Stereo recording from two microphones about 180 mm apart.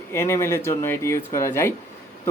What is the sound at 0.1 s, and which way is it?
A man's voice, 15° left (ahead or behind).